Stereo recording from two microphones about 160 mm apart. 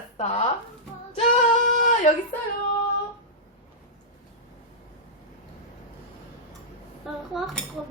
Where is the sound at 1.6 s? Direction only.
55° left (ahead or behind).